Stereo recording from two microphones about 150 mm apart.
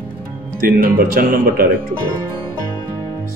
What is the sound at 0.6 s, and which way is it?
Speech, 80° right.